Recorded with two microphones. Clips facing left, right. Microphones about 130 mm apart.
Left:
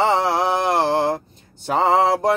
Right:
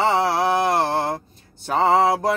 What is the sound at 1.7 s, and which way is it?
Mantra, 15° left (ahead or behind).